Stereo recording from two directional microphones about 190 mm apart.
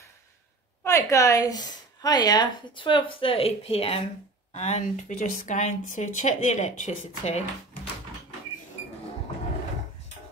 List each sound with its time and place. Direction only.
0.8 s a woman's voice: 15° left (ahead or behind); by 7.9 s 35° left (ahead or behind)